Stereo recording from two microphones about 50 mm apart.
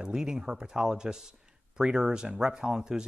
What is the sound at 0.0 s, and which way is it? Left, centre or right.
Speech, centre.